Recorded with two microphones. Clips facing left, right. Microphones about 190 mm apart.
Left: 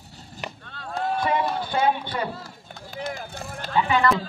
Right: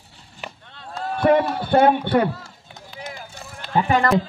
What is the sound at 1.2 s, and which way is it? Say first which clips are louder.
A man's voice: right 10 dB; 60° right (ahead or behind).